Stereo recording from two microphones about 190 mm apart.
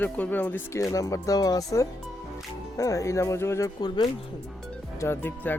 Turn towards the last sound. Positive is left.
turn(degrees=10)  # may be behind; listen again after turning